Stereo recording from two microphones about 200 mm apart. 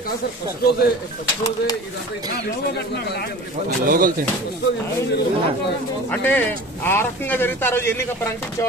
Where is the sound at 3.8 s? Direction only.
45° right (ahead or behind).